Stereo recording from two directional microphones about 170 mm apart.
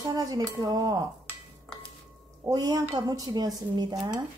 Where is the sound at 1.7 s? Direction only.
5° left (ahead or behind).